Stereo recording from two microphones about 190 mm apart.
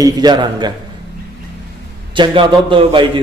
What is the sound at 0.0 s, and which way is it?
Speech, 20° right (ahead or behind).